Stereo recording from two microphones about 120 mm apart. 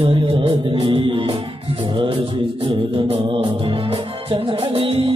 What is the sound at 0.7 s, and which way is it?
Music, 50° right (ahead or behind).